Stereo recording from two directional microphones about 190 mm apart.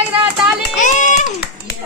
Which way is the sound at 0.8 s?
40° left (ahead or behind).